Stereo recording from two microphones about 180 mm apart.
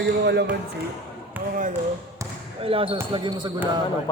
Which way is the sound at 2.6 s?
30° right (ahead or behind).